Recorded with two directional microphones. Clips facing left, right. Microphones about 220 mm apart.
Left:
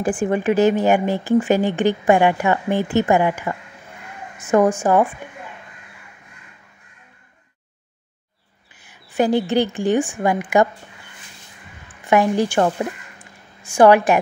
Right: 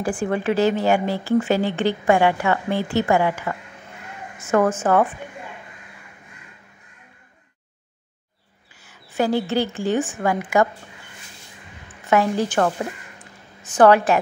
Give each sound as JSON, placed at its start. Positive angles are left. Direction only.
{"t": 0.0, "sound": "speech", "side_deg": 15}
{"t": 8.7, "sound": "a woman's voice", "side_deg": 15}
{"t": 12.1, "sound": "speech", "side_deg": 15}
{"t": 13.2, "sound": "a sound", "side_deg": 10}